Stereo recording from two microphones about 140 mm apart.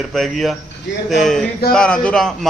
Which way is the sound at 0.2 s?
Centre (ahead or behind).